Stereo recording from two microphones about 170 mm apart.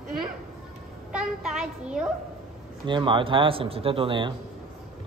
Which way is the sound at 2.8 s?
30° right (ahead or behind).